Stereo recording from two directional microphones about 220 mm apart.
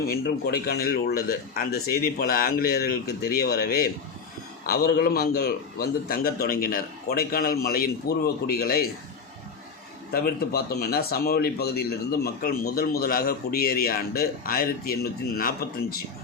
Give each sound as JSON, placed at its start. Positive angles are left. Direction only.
{"t": 0.1, "sound": "speech", "side_deg": 45}
{"t": 10.1, "sound": "speech", "side_deg": 45}